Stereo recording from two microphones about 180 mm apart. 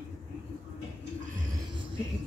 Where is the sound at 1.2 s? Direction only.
45° right (ahead or behind).